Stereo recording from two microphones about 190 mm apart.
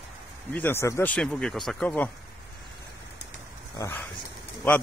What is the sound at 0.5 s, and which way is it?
Speech, 10° left (ahead or behind).